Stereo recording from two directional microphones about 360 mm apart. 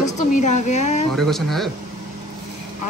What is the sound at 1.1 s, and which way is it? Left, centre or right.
Speech, centre.